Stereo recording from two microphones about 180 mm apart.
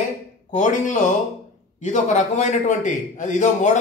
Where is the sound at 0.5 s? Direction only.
45° left (ahead or behind).